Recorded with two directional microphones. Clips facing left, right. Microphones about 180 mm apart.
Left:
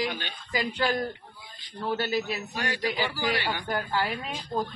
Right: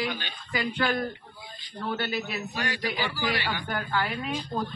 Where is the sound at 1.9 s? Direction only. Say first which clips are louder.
Left 3 dB; 35° left (ahead or behind).